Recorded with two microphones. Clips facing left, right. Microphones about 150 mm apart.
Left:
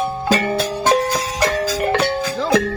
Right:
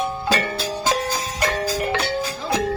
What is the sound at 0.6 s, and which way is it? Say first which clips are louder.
Music: left 6 dB; 70° left (ahead or behind).